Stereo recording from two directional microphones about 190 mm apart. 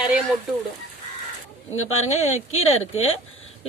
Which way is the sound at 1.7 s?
90° left.